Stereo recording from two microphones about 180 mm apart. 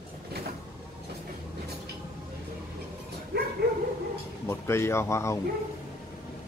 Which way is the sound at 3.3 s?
65° right (ahead or behind).